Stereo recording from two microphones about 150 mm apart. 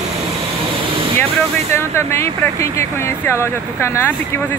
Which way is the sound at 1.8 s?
15° left (ahead or behind).